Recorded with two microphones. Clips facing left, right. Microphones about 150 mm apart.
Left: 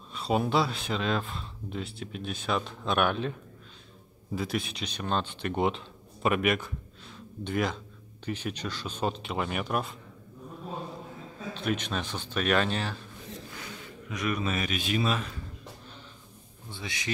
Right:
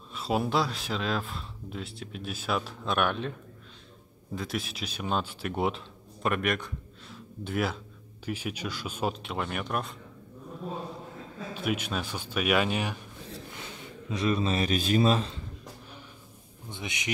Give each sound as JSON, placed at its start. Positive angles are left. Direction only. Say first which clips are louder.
{"t": 0.1, "sound": "speech", "louder": "left 1 dB", "side_deg": 0}
{"t": 4.4, "sound": "speech", "louder": "left 2 dB", "side_deg": 0}
{"t": 11.5, "sound": "speech", "louder": "even", "side_deg": -10}
{"t": 13.3, "sound": "speech", "louder": "left 1 dB", "side_deg": -25}
{"t": 16.6, "sound": "speech", "louder": "right 1 dB", "side_deg": -20}